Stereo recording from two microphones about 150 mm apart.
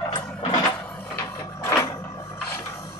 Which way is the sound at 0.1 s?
35° left (ahead or behind).